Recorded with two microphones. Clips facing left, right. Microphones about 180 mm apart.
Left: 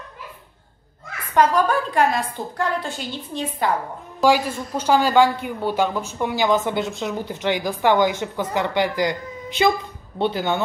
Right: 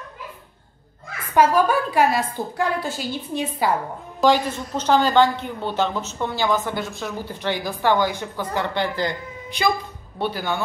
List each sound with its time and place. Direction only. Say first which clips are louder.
1.3 s a woman's voice: right 1 dB; 10° right (ahead or behind)
4.2 s speech: even; 10° left (ahead or behind)